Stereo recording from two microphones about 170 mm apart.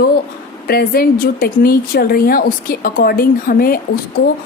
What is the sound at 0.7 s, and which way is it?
Speech, 60° left (ahead or behind).